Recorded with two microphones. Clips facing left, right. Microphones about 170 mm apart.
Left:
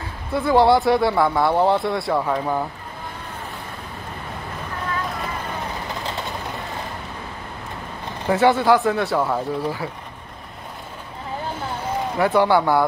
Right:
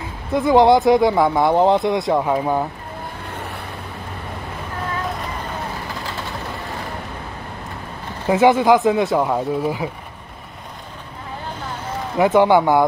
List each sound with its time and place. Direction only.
0.3 s speech: 15° right (ahead or behind)
8.3 s speech: 15° right (ahead or behind)
12.2 s a man's voice: 20° right (ahead or behind)